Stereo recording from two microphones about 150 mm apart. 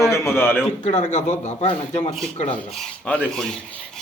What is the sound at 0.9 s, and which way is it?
A man's voice, 50° left (ahead or behind).